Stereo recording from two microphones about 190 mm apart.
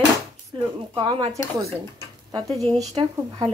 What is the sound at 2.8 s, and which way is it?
Speech, 20° right (ahead or behind).